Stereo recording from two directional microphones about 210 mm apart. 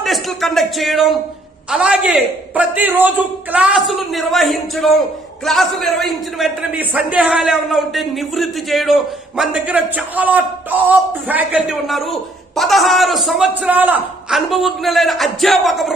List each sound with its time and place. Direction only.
0.0 s a man's voice: centre (ahead or behind)